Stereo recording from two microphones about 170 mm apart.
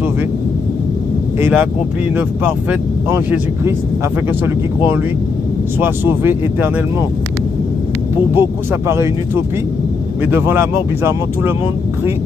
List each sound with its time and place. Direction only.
1.4 s speech: 10° right (ahead or behind)
5.8 s speech: 15° right (ahead or behind)
8.4 s speech: 15° right (ahead or behind)